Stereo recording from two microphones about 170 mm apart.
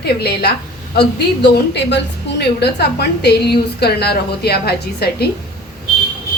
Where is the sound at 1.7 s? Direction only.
90° left; by 5.3 s 70° left (ahead or behind).